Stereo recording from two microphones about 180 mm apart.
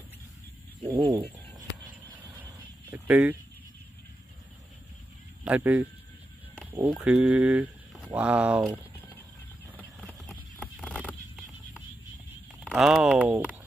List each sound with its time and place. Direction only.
0.8 s fowl: 30° right (ahead or behind)
2.1 s a sound: 10° right (ahead or behind)
2.9 s speech: 10° right (ahead or behind)
5.4 s speech: 10° right (ahead or behind)
9.8 s horse: 5° left (ahead or behind)
12.6 s speech: centre (ahead or behind)